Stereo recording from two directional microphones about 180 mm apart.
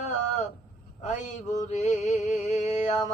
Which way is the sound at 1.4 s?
45° left (ahead or behind).